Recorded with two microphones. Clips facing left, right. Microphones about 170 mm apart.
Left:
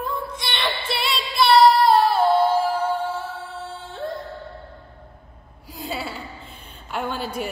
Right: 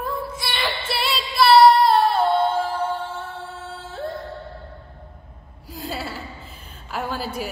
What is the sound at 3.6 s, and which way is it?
Singing, centre (ahead or behind).